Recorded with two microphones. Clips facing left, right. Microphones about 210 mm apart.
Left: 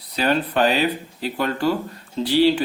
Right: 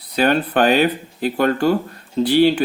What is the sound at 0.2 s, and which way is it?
Speech, 55° right (ahead or behind).